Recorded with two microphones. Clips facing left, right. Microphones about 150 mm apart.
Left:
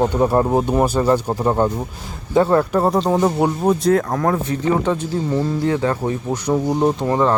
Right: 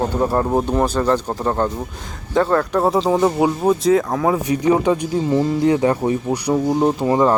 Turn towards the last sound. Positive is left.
turn(degrees=-10)  # may be behind; listen again after turning